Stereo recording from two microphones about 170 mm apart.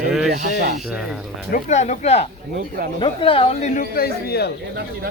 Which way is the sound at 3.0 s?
30° left (ahead or behind).